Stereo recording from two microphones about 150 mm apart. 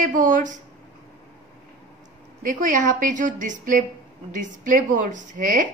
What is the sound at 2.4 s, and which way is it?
Speech, 60° right (ahead or behind).